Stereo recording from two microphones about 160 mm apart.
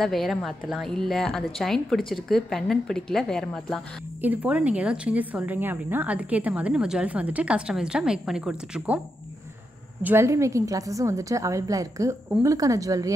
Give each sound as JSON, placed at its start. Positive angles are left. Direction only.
{"t": 0.0, "sound": "a woman's voice", "side_deg": 0}
{"t": 4.2, "sound": "a woman's voice", "side_deg": -10}
{"t": 10.0, "sound": "a woman's voice", "side_deg": -15}